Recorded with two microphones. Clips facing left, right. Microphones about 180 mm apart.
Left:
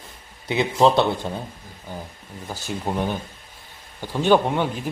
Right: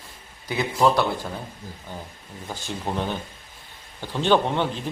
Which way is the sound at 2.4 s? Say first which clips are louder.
Left 2 dB; 10° left (ahead or behind).